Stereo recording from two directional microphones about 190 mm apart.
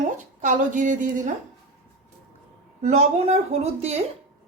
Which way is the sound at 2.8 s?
35° right (ahead or behind).